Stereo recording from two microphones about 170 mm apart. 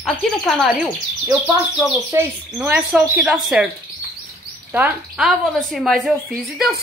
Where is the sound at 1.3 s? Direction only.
10° right (ahead or behind).